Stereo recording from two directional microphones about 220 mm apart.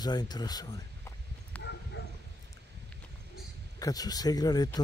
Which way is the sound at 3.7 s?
15° left (ahead or behind).